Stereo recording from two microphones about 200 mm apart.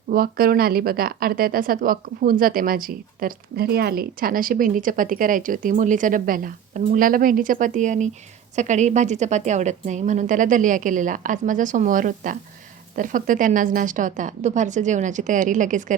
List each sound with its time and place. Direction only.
0.1 s a woman's voice: 50° right (ahead or behind)